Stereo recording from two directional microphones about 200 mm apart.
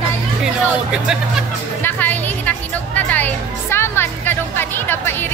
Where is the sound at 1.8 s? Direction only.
10° left (ahead or behind).